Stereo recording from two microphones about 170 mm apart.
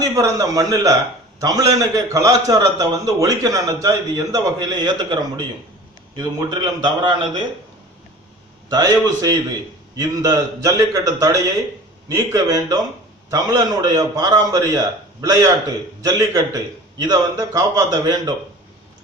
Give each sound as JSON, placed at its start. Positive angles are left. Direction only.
{"t": 0.0, "sound": "a man's voice", "side_deg": -20}
{"t": 8.7, "sound": "a man's voice", "side_deg": -20}